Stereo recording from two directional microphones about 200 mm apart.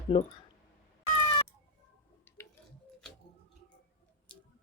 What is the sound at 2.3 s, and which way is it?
Squish, 10° left (ahead or behind).